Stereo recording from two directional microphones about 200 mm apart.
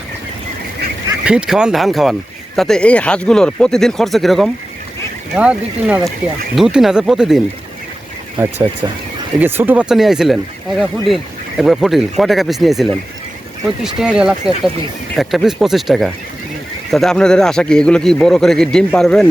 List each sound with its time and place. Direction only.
1.2 s speech: 5° right (ahead or behind)
8.8 s speech: 15° right (ahead or behind); by 19.3 s 5° left (ahead or behind)